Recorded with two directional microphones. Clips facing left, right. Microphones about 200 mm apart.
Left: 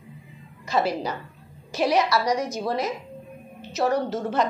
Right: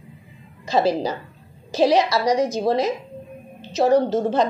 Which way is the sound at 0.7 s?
35° right (ahead or behind).